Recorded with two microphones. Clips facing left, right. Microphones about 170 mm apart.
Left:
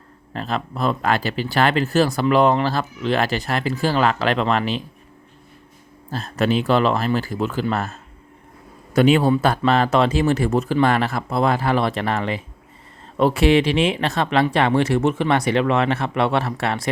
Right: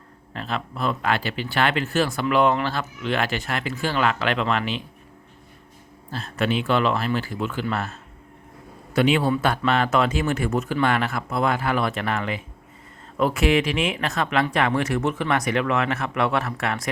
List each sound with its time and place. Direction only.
0.3 s speech: 40° left (ahead or behind)
6.1 s a man's voice: 40° left (ahead or behind)